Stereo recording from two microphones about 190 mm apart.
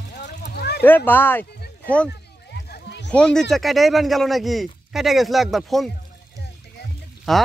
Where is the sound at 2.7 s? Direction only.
65° left (ahead or behind).